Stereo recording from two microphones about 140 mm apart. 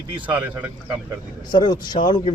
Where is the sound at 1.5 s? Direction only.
30° left (ahead or behind).